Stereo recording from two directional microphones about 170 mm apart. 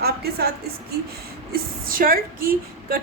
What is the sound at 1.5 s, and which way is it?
A woman's voice, 60° right (ahead or behind).